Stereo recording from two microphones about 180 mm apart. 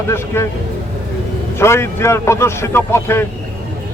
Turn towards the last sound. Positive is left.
turn(degrees=15)  # may be behind; listen again after turning